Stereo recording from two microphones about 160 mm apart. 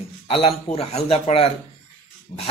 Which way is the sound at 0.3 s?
40° left (ahead or behind).